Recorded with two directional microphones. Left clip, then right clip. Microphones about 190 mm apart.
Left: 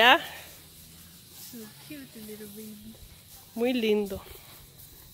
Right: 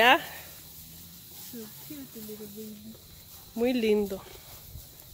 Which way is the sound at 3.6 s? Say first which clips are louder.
Even; 5° right (ahead or behind).